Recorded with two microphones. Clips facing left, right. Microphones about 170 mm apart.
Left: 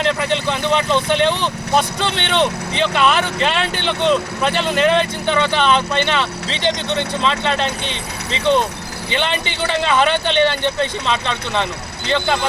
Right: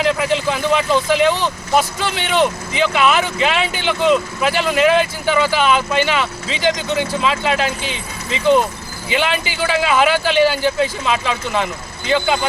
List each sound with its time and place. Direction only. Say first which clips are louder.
0.0 s speech: right 2 dB; 5° right (ahead or behind)
9.0 s speech: right 2 dB; 5° right (ahead or behind)